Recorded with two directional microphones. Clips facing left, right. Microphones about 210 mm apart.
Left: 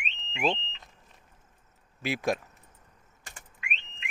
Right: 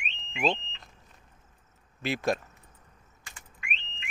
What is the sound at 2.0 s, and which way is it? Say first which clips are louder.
Speech: even; 10° left (ahead or behind).